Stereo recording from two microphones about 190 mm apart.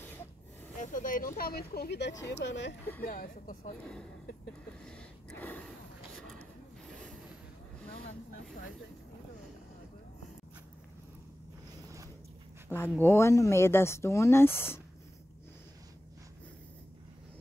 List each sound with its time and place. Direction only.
0.7 s speech: 45° left (ahead or behind); by 2.7 s 65° left (ahead or behind)
3.0 s speech: 45° left (ahead or behind)
4.8 s a sound: 5° left (ahead or behind)
12.7 s speech: 10° left (ahead or behind)